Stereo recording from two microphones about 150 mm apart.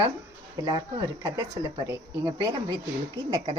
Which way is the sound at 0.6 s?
30° right (ahead or behind).